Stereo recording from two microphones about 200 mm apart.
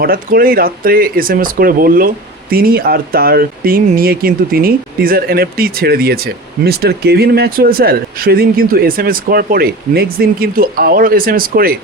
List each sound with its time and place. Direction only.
0.0 s speech: 45° right (ahead or behind)